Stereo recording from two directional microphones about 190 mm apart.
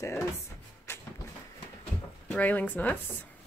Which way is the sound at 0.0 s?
15° left (ahead or behind).